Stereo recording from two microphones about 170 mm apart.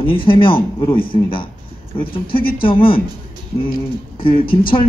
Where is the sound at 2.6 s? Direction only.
30° left (ahead or behind).